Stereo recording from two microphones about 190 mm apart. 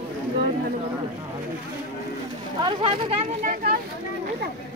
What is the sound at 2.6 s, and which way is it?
Speech, 30° right (ahead or behind).